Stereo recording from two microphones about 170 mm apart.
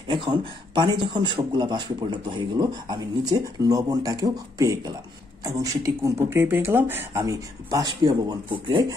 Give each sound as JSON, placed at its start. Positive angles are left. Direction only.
{"t": 0.1, "sound": "speech", "side_deg": -30}